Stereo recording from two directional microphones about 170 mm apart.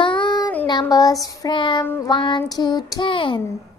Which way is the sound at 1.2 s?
20° left (ahead or behind).